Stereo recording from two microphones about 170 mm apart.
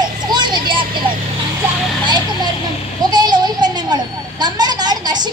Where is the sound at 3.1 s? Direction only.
25° right (ahead or behind).